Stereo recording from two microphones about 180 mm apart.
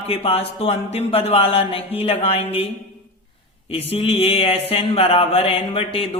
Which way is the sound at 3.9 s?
35° left (ahead or behind).